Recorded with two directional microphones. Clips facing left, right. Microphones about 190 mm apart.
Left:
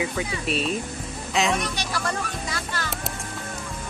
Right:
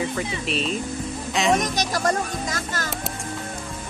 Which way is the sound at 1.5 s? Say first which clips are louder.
Right 5 dB; 40° right (ahead or behind).